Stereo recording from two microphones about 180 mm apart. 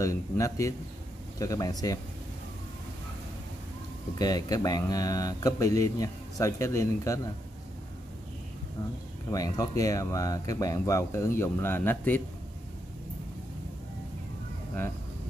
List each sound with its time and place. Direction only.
0.0 s speech: 15° left (ahead or behind)
4.1 s speech: 20° left (ahead or behind)
9.3 s speech: 20° left (ahead or behind)